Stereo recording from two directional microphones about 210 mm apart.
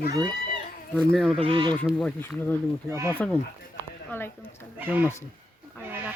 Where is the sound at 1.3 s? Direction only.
25° right (ahead or behind).